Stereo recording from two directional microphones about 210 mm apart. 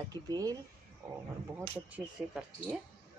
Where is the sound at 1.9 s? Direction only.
5° right (ahead or behind).